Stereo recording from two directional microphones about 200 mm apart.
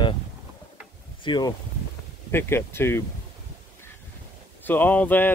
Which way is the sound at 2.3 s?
10° left (ahead or behind).